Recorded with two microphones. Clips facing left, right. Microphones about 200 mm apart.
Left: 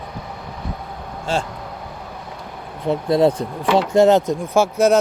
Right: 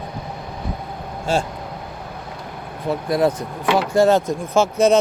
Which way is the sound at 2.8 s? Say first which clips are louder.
Left 3 dB; 25° left (ahead or behind).